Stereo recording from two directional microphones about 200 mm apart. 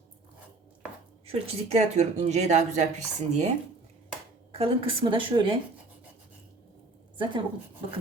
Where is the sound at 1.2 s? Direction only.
30° right (ahead or behind).